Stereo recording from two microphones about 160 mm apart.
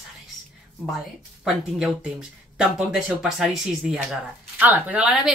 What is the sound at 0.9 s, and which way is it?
Speech, centre (ahead or behind).